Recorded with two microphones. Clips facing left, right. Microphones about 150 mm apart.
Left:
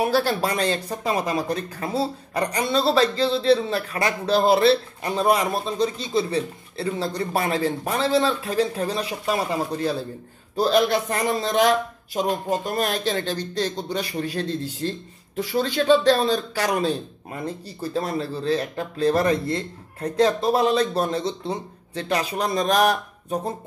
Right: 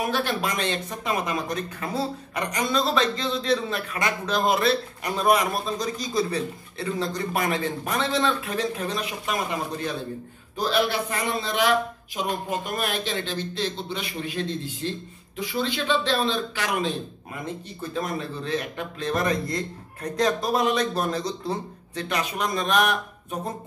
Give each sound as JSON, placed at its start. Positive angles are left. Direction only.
{"t": 0.0, "sound": "speech", "side_deg": 35}